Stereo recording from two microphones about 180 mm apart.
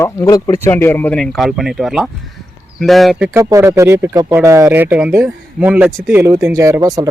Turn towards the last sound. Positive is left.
turn(degrees=-20)  # may be behind; listen again after turning